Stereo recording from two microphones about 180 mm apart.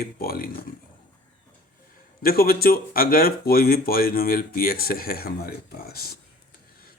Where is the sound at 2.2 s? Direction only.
55° left (ahead or behind).